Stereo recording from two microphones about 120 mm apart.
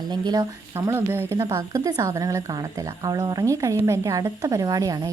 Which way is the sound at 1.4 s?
35° right (ahead or behind).